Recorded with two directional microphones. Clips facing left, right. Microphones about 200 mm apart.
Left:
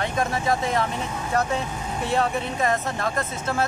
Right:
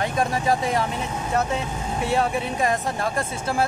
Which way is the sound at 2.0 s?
10° right (ahead or behind).